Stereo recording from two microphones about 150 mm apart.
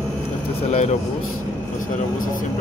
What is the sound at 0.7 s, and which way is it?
Speech, 45° left (ahead or behind).